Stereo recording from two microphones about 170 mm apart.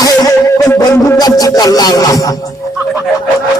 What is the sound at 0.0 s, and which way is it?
Music, 20° left (ahead or behind).